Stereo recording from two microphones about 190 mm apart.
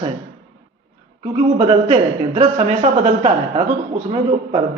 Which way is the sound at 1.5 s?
30° right (ahead or behind).